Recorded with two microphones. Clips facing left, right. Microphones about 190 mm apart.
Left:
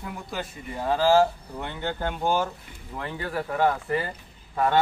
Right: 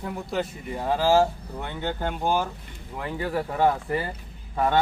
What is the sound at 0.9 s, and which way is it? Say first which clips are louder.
Speech: left 1 dB; 15° right (ahead or behind).